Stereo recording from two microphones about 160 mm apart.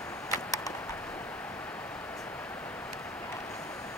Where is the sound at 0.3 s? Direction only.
20° left (ahead or behind).